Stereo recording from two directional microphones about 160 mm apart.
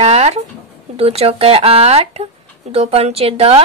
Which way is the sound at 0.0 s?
40° right (ahead or behind).